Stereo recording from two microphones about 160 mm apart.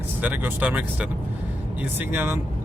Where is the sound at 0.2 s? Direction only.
10° right (ahead or behind).